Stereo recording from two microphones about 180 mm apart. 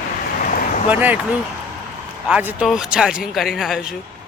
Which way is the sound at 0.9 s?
10° right (ahead or behind).